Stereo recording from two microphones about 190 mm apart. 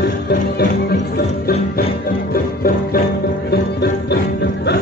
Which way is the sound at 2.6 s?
50° left (ahead or behind).